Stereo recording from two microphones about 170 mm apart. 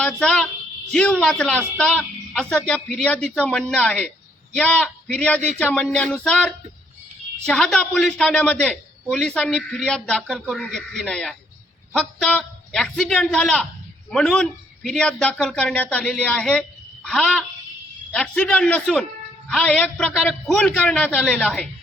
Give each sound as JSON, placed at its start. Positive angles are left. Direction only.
{"t": 0.0, "sound": "a woman's voice", "side_deg": 5}